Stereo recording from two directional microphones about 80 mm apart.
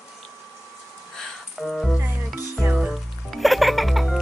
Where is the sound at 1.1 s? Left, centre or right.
Centre.